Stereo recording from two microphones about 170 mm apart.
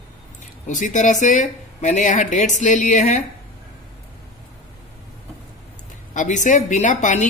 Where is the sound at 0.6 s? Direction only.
45° left (ahead or behind).